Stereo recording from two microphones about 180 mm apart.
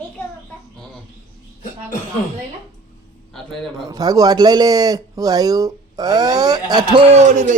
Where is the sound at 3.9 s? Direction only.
20° right (ahead or behind).